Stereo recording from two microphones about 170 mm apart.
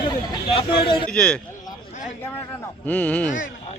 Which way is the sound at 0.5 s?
30° left (ahead or behind).